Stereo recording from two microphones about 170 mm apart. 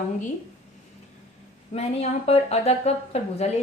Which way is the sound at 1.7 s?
40° left (ahead or behind).